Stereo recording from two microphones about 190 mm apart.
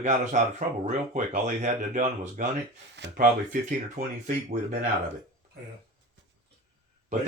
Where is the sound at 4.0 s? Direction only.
40° right (ahead or behind).